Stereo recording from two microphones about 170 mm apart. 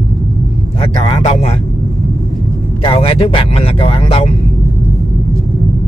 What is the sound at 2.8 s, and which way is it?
Speech, 30° left (ahead or behind).